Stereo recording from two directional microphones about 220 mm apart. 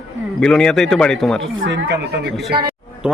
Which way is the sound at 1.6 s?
55° right (ahead or behind).